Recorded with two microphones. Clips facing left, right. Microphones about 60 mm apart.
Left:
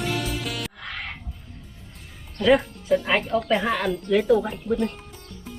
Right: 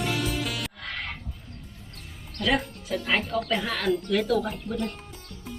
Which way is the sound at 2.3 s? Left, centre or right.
Centre.